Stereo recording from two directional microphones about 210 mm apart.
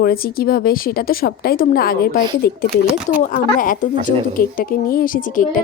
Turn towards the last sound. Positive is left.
turn(degrees=40)  # may be behind; listen again after turning